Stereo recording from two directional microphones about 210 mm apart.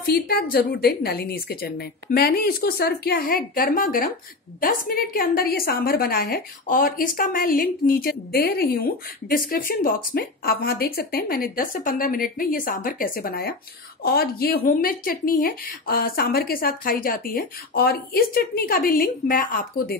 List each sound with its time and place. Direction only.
0.0 s a woman's voice: 45° left (ahead or behind)